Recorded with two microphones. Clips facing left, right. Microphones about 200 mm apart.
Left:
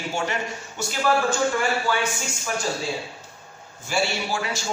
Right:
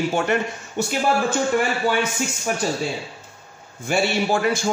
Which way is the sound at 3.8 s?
55° right (ahead or behind).